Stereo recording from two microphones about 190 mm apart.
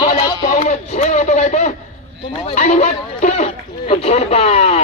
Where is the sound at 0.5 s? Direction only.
40° left (ahead or behind).